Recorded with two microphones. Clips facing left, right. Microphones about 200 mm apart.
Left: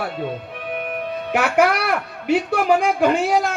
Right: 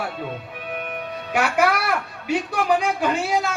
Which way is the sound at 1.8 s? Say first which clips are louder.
Left 3 dB; 60° left (ahead or behind).